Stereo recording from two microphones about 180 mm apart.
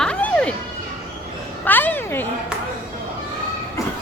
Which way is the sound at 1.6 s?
10° left (ahead or behind).